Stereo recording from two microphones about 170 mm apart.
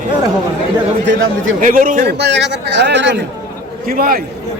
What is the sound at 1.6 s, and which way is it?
Speech, 55° right (ahead or behind).